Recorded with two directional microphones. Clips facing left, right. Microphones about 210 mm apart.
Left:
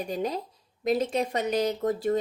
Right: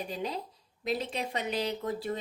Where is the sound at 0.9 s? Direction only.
45° left (ahead or behind).